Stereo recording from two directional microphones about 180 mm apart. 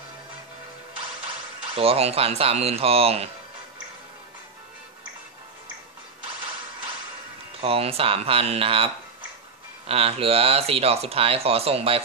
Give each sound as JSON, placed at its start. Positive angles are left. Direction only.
{"t": 1.8, "sound": "speech", "side_deg": -35}
{"t": 7.6, "sound": "speech", "side_deg": -35}